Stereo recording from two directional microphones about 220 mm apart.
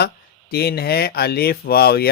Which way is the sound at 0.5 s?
45° left (ahead or behind).